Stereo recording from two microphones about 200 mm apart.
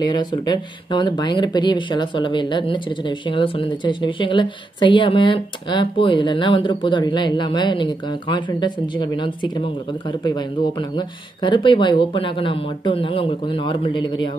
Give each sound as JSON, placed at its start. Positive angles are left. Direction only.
{"t": 0.0, "sound": "speech", "side_deg": 20}